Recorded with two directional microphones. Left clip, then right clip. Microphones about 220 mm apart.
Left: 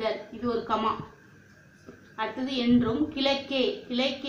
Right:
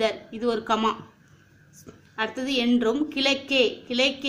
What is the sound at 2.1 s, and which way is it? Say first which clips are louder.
A woman's voice: right 4 dB; 45° right (ahead or behind).